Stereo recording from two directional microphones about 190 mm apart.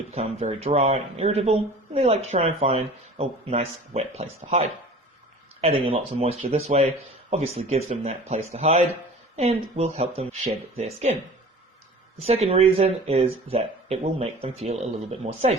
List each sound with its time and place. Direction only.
0.1 s speech: 35° right (ahead or behind)
12.2 s speech: 35° right (ahead or behind)